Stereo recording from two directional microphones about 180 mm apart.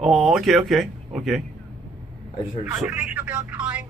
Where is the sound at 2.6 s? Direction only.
10° right (ahead or behind).